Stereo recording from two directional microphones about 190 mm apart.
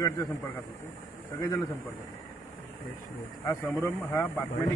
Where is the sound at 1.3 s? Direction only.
20° left (ahead or behind).